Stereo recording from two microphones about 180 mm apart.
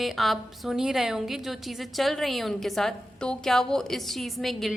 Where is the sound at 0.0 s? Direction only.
Centre (ahead or behind).